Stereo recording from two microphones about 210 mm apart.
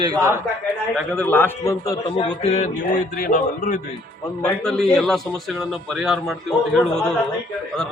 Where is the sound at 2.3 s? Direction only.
30° left (ahead or behind).